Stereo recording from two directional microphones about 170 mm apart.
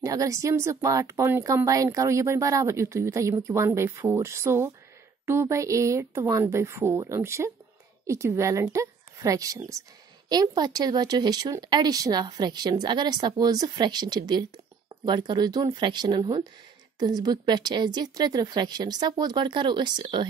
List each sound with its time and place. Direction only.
0.0 s speech: 20° right (ahead or behind)